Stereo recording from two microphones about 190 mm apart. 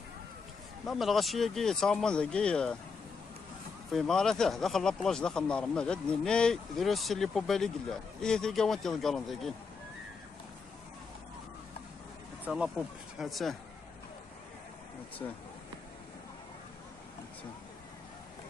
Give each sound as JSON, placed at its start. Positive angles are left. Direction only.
{"t": 0.8, "sound": "speech", "side_deg": 0}
{"t": 3.9, "sound": "speech", "side_deg": 5}
{"t": 12.4, "sound": "speech", "side_deg": -5}
{"t": 15.2, "sound": "speech", "side_deg": 15}